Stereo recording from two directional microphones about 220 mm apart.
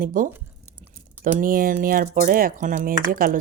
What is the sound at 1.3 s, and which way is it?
Speech, 40° right (ahead or behind).